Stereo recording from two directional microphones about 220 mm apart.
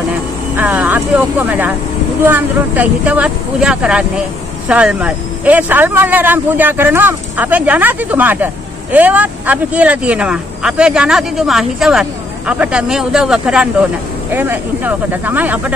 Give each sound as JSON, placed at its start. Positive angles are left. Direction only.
{"t": 0.6, "sound": "vehicle", "side_deg": -5}
{"t": 2.2, "sound": "speech", "side_deg": -10}